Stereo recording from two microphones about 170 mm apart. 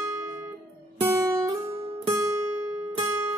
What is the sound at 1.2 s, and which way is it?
Guitar, 20° right (ahead or behind).